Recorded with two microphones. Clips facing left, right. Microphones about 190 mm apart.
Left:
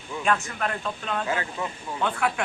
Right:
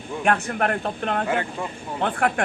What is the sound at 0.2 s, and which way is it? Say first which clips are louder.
Speech: right 4 dB; 60° right (ahead or behind).